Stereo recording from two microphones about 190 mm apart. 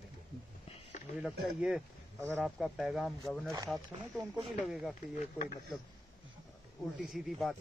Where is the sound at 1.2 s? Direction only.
5° right (ahead or behind).